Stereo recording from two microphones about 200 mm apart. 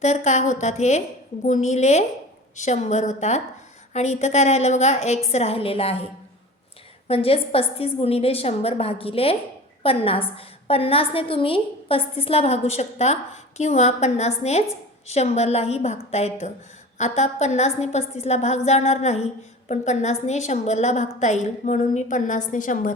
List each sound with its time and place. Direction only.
0.0 s a woman's voice: 35° left (ahead or behind)
7.1 s a woman's voice: 30° left (ahead or behind)